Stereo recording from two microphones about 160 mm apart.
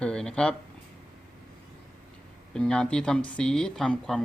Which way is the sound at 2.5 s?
5° left (ahead or behind).